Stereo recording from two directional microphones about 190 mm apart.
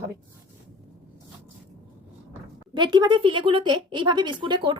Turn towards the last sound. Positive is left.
turn(degrees=-25)  # may be behind; listen again after turning